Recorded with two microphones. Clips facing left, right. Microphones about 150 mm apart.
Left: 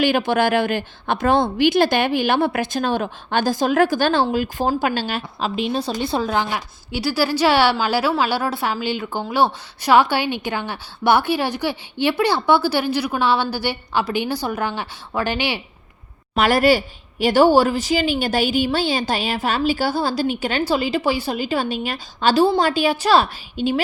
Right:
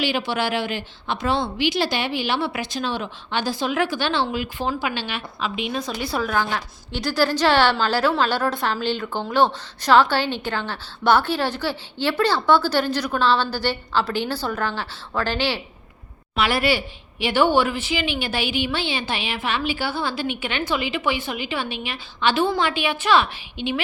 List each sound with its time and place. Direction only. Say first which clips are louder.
0.0 s a woman's voice: left 6 dB; 50° left (ahead or behind); by 15.6 s 15° left (ahead or behind)
16.3 s speech: left 5 dB; 45° left (ahead or behind)